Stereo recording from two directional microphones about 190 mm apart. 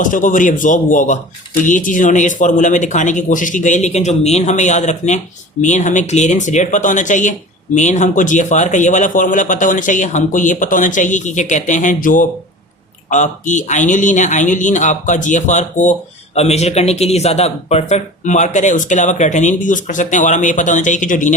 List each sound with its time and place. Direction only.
0.0 s a man's voice: 45° left (ahead or behind)